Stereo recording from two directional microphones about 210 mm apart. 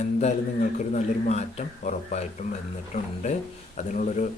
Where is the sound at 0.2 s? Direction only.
35° left (ahead or behind).